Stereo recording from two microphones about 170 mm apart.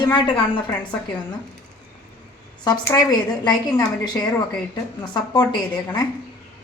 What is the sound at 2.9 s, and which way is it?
A woman's voice, 25° left (ahead or behind).